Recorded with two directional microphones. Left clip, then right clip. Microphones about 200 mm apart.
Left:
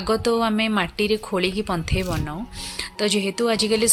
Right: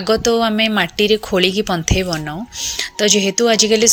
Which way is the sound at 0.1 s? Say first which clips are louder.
Right 6 dB; 15° right (ahead or behind).